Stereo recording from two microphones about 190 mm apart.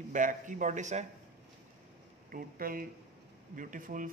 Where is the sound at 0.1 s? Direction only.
40° right (ahead or behind).